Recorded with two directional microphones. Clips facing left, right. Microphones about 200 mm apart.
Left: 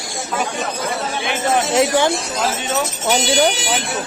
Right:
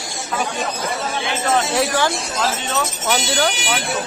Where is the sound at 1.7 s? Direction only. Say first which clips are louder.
Left 4 dB; 20° left (ahead or behind).